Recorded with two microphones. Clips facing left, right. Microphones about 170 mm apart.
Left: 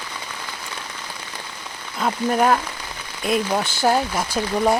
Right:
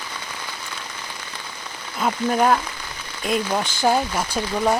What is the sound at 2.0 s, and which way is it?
Speech, centre (ahead or behind).